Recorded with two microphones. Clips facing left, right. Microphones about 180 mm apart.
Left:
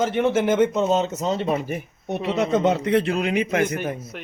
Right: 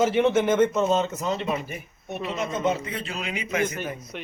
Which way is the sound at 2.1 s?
75° left (ahead or behind).